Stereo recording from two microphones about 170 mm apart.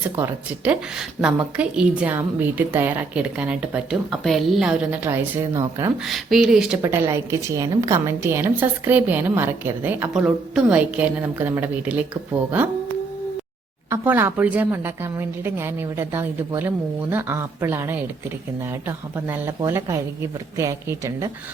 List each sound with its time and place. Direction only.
0.2 s a woman's voice: 10° right (ahead or behind)
6.1 s a woman's voice: centre (ahead or behind)
6.8 s a woman's voice: 15° right (ahead or behind)
13.9 s a woman's voice: 10° right (ahead or behind)